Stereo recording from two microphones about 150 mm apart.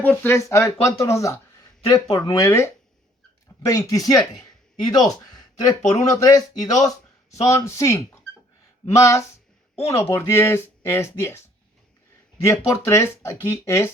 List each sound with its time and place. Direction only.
0.0 s speech: 10° left (ahead or behind)
2.0 s speech: 35° left (ahead or behind)
2.4 s speech: 20° left (ahead or behind)
5.8 s speech: 50° left (ahead or behind)
6.2 s speech: 25° left (ahead or behind)
6.7 s a sound: 20° left (ahead or behind)
7.4 s speech: 20° left (ahead or behind)
12.4 s speech: 15° left (ahead or behind)